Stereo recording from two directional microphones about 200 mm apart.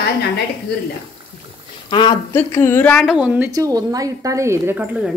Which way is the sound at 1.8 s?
25° left (ahead or behind).